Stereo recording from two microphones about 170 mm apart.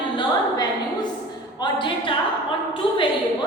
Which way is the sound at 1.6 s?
30° left (ahead or behind).